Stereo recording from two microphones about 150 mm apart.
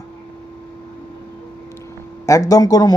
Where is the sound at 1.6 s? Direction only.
20° left (ahead or behind).